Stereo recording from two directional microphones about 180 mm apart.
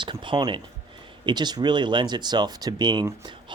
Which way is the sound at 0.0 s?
25° right (ahead or behind).